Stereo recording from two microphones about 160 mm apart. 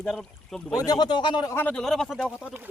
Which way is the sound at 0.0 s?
Centre (ahead or behind).